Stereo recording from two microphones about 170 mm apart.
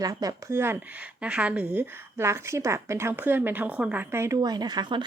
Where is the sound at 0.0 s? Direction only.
20° right (ahead or behind).